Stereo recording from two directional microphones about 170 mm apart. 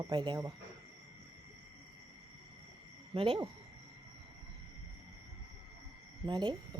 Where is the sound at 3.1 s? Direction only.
30° right (ahead or behind).